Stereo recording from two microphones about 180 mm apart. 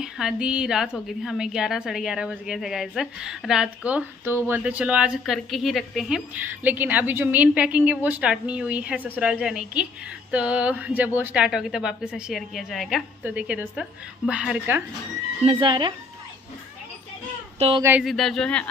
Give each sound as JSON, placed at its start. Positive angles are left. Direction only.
{"t": 0.0, "sound": "a woman's voice", "side_deg": -5}
{"t": 15.4, "sound": "speech", "side_deg": -30}
{"t": 17.6, "sound": "speech", "side_deg": -30}
{"t": 18.0, "sound": "a woman's voice", "side_deg": 0}